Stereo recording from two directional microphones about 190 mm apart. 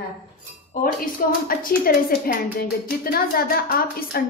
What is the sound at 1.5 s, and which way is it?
A woman's voice, 50° left (ahead or behind).